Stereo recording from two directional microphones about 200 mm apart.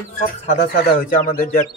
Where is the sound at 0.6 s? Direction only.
45° left (ahead or behind).